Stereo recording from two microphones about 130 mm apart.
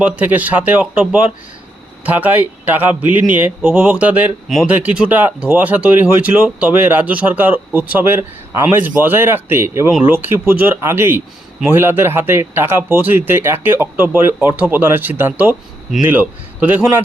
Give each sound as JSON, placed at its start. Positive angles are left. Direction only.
{"t": 0.0, "sound": "speech", "side_deg": -10}
{"t": 4.4, "sound": "speech", "side_deg": 0}